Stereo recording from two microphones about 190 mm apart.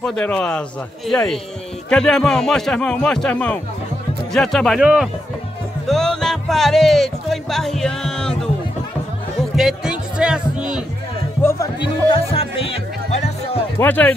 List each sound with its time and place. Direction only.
0.0 s a man's voice: 5° left (ahead or behind)
9.6 s music: 5° right (ahead or behind)
11.4 s music: 20° left (ahead or behind)
12.1 s music: 30° left (ahead or behind)
13.7 s speech: 10° left (ahead or behind)